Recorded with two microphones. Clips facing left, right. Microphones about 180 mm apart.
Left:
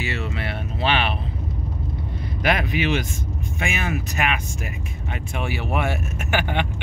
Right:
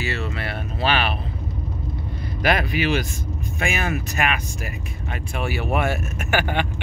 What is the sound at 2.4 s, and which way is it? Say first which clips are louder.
Speech: right 1 dB; 20° left (ahead or behind).